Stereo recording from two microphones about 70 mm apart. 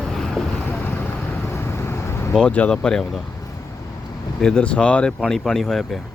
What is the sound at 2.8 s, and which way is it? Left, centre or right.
Speech, centre.